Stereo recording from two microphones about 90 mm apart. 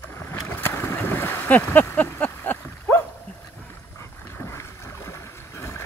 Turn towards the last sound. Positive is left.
turn(degrees=30)  # may be behind; listen again after turning